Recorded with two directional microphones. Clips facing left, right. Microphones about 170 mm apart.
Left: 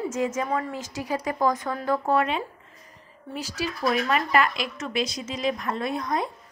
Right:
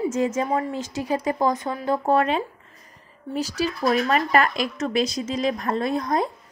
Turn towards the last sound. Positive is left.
turn(degrees=-35)  # may be behind; listen again after turning